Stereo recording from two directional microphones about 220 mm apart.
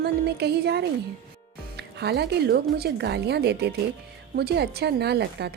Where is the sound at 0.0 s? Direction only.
50° right (ahead or behind).